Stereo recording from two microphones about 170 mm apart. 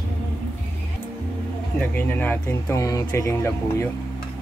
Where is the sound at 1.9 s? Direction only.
10° left (ahead or behind).